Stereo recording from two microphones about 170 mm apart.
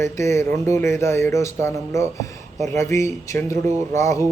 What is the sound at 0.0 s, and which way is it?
Speech, 15° left (ahead or behind).